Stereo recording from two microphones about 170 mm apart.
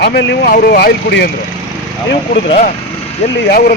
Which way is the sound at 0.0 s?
85° left.